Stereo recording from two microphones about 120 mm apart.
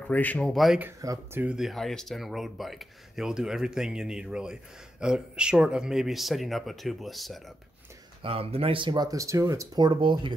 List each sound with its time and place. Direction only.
0.0 s speech: 15° left (ahead or behind)
1.3 s speech: 15° right (ahead or behind)
1.6 s speech: centre (ahead or behind)
8.2 s speech: 50° right (ahead or behind)